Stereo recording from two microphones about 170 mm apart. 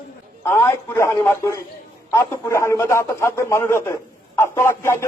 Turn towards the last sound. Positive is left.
turn(degrees=15)  # may be behind; listen again after turning